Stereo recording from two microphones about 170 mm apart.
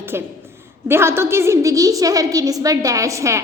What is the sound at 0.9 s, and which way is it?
A woman's voice, 15° right (ahead or behind).